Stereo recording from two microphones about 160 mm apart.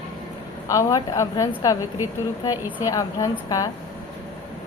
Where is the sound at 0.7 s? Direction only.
20° left (ahead or behind).